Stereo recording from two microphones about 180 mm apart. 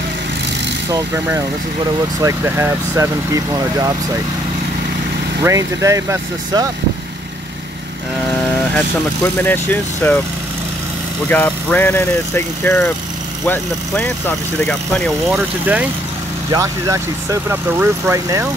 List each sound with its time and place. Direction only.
0.9 s speech: 15° right (ahead or behind)
5.4 s speech: 15° right (ahead or behind)
8.7 s speech: 10° left (ahead or behind)
11.2 s speech: 10° left (ahead or behind)
15.6 s speech: 10° right (ahead or behind)